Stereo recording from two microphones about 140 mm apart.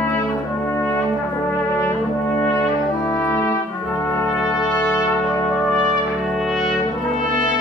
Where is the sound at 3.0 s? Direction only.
15° left (ahead or behind).